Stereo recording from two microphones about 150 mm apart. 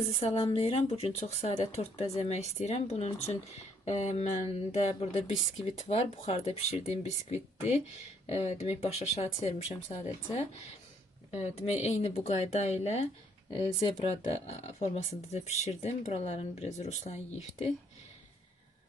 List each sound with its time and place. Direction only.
0.1 s speech: 40° left (ahead or behind)
9.7 s speech: 20° left (ahead or behind)
11.3 s speech: 45° left (ahead or behind)